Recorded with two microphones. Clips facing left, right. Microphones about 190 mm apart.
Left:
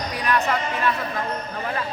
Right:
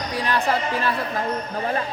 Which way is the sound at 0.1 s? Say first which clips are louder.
Right 1 dB; 30° right (ahead or behind).